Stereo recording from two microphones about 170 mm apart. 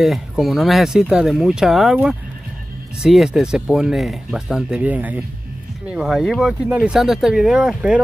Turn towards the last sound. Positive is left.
turn(degrees=-5)  # may be behind; listen again after turning